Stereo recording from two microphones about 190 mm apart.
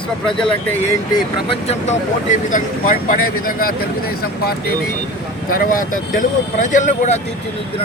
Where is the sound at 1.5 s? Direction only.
35° left (ahead or behind).